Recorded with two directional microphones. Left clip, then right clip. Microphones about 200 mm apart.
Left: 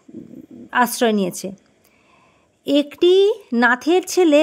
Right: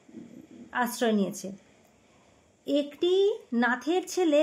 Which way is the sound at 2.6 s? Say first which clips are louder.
Left 11 dB; 50° left (ahead or behind).